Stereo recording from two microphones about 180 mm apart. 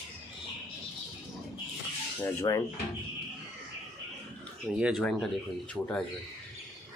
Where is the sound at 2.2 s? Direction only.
20° left (ahead or behind).